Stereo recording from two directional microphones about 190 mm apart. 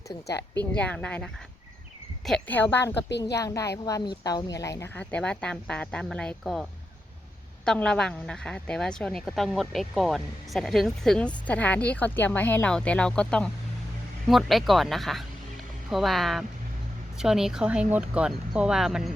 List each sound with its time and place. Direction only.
0.1 s speech: 15° left (ahead or behind)
3.1 s speech: 65° left (ahead or behind)
3.3 s speech: 15° left (ahead or behind); by 19.1 s centre (ahead or behind)